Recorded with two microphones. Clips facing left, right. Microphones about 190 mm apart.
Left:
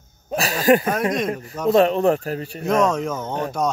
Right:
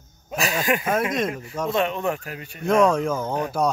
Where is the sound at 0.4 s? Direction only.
35° left (ahead or behind).